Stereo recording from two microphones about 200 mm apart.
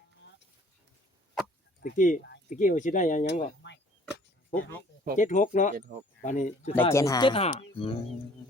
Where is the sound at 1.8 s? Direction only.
45° left (ahead or behind).